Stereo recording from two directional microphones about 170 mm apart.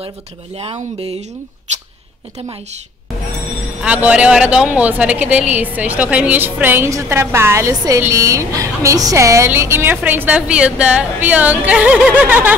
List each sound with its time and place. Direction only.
0.6 s speech: 35° right (ahead or behind)
3.8 s a woman's voice: 5° right (ahead or behind)